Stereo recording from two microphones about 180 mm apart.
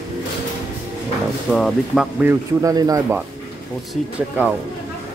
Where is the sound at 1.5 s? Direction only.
Centre (ahead or behind).